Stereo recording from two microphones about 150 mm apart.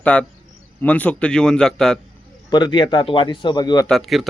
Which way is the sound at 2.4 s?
30° left (ahead or behind).